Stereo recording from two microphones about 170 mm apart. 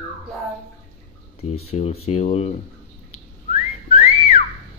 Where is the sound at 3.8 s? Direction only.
35° left (ahead or behind).